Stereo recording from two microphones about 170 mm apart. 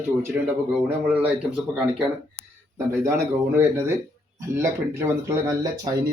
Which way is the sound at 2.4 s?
30° left (ahead or behind).